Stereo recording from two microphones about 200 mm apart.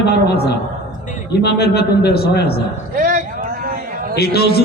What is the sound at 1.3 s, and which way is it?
Speech, 55° left (ahead or behind).